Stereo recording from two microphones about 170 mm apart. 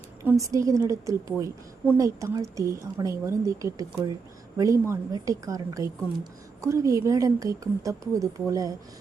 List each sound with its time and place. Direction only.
0.3 s a woman's voice: 20° right (ahead or behind)